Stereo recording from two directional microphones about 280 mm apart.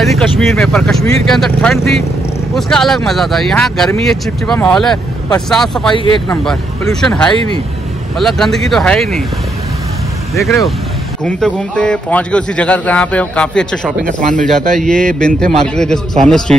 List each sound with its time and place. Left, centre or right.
0.0 s a man's voice: centre
10.3 s a man's voice: centre
14.0 s speech: right
14.7 s a man's voice: centre